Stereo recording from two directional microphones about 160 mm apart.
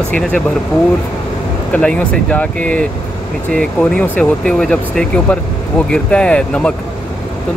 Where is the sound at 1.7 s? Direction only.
10° left (ahead or behind).